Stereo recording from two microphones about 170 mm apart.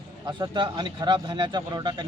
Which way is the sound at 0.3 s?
25° right (ahead or behind).